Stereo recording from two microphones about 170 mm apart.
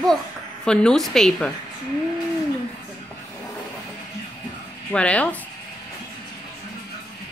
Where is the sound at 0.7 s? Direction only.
5° left (ahead or behind).